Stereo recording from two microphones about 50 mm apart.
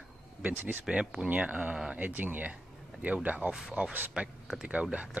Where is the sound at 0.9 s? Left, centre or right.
Right.